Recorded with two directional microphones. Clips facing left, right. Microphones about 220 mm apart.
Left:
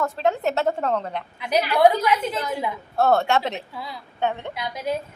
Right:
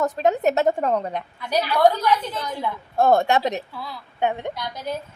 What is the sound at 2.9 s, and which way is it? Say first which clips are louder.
A woman's voice: right 2 dB; 15° right (ahead or behind).